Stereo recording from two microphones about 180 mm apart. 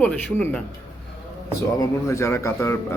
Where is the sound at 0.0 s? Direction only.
5° left (ahead or behind).